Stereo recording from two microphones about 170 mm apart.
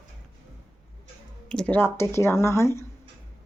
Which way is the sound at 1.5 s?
5° left (ahead or behind).